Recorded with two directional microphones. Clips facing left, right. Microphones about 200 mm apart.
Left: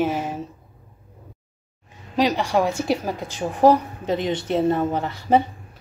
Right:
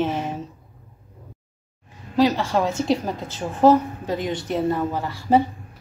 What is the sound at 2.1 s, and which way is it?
A woman's voice, 15° left (ahead or behind).